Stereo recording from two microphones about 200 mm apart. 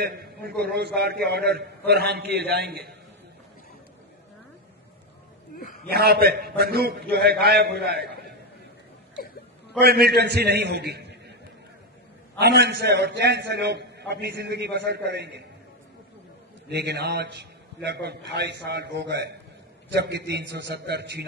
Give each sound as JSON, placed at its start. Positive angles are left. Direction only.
{"t": 0.0, "sound": "a man's voice", "side_deg": -50}
{"t": 5.6, "sound": "a sound", "side_deg": 45}
{"t": 5.9, "sound": "a man's voice", "side_deg": -50}
{"t": 9.8, "sound": "a man's voice", "side_deg": -50}
{"t": 12.4, "sound": "a man's voice", "side_deg": -55}
{"t": 16.6, "sound": "a man's voice", "side_deg": -55}